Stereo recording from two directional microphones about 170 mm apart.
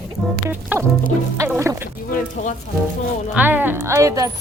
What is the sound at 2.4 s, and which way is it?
Speech, 50° left (ahead or behind).